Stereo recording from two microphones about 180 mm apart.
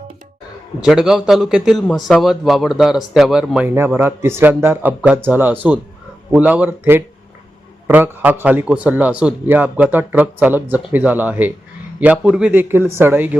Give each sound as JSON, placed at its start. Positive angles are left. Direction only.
{"t": 0.8, "sound": "a man's voice", "side_deg": -5}